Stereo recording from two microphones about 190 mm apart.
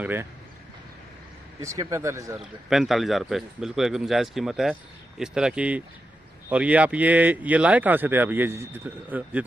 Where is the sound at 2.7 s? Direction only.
Centre (ahead or behind).